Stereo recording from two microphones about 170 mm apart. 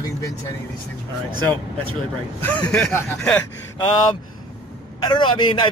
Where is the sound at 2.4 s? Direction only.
5° left (ahead or behind).